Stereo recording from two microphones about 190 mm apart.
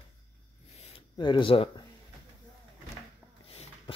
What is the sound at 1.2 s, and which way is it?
Speech, 25° left (ahead or behind).